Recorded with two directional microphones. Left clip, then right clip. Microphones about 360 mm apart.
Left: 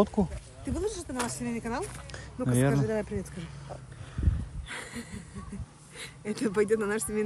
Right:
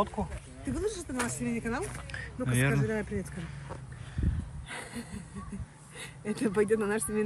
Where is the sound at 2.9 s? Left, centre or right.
Left.